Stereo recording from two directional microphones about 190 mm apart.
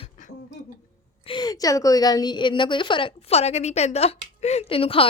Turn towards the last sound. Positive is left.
turn(degrees=30)  # may be behind; listen again after turning